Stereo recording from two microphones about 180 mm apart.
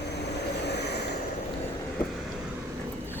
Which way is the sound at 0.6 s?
65° left (ahead or behind).